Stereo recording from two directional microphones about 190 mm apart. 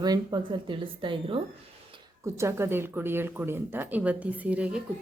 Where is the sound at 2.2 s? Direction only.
15° right (ahead or behind).